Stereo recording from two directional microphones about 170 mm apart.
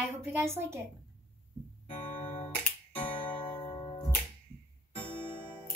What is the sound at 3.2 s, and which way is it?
Music, 30° left (ahead or behind).